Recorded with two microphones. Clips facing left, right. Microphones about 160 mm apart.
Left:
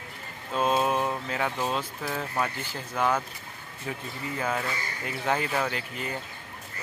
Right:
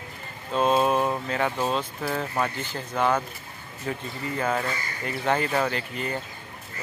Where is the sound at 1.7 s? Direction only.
5° left (ahead or behind).